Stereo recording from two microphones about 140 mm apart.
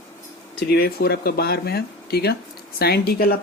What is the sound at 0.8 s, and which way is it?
Speech, 90° left.